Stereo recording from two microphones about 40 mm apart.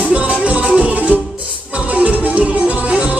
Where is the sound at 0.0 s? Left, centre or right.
Right.